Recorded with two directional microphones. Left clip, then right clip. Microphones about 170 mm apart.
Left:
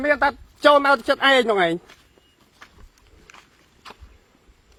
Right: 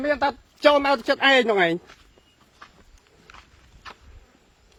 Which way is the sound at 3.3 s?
90° left.